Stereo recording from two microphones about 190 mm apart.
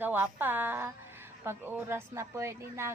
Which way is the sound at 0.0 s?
10° right (ahead or behind).